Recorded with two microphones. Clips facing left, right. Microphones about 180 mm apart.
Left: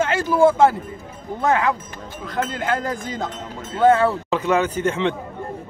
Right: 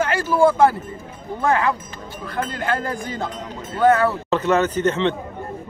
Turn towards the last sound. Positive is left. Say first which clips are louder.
# right 2 dB
turn(degrees=10)  # may be behind; listen again after turning